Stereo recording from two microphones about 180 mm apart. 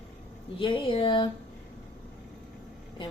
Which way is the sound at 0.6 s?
30° left (ahead or behind).